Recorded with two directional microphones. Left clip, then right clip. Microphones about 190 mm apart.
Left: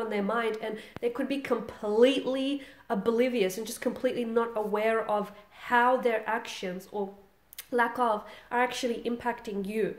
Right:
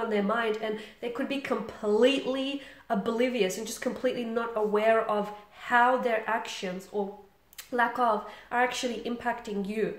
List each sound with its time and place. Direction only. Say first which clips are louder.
0.1 s speech: right 2 dB; 45° left (ahead or behind)